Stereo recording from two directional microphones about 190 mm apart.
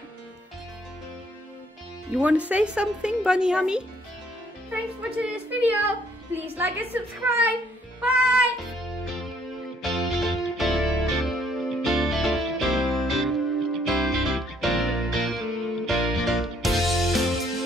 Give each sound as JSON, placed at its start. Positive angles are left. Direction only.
{"t": 2.0, "sound": "a woman's voice", "side_deg": -5}
{"t": 8.0, "sound": "music", "side_deg": -5}